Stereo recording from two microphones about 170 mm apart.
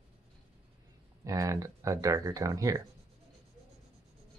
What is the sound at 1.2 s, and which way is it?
Speech, 20° right (ahead or behind).